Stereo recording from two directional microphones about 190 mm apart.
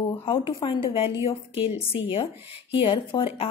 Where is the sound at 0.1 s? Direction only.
30° left (ahead or behind).